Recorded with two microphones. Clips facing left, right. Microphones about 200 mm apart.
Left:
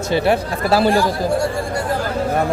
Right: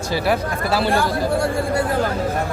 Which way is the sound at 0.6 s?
40° left (ahead or behind).